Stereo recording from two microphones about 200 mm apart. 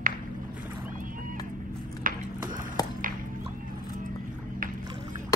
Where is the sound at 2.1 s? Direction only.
45° right (ahead or behind).